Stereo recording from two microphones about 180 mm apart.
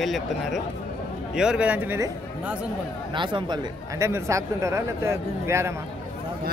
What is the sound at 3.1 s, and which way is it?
Speech, 25° right (ahead or behind).